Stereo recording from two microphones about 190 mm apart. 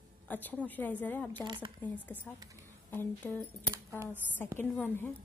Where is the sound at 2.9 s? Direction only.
10° left (ahead or behind).